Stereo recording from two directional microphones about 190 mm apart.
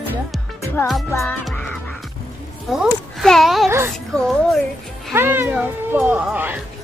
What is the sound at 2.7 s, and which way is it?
Speech, centre (ahead or behind).